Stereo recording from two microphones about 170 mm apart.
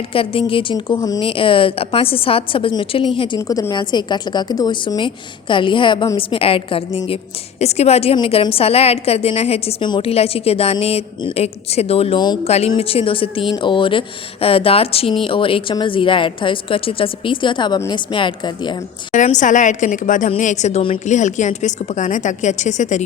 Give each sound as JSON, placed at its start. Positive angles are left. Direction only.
{"t": 0.1, "sound": "a woman's voice", "side_deg": 30}
{"t": 19.1, "sound": "a woman's voice", "side_deg": 45}